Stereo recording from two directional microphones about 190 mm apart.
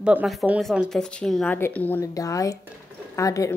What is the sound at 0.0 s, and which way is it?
Speech, 5° right (ahead or behind).